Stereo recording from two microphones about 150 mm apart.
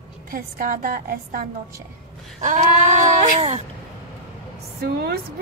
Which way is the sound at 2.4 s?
55° right (ahead or behind).